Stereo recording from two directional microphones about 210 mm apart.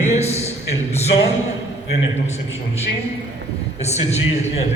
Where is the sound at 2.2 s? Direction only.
30° left (ahead or behind).